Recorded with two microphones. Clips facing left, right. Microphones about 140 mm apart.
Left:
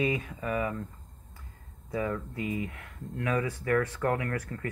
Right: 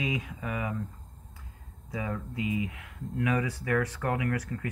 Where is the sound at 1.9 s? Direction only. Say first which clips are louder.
Left 3 dB; 15° right (ahead or behind).